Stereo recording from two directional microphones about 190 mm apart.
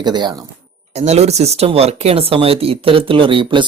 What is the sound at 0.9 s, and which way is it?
Speech, 35° right (ahead or behind).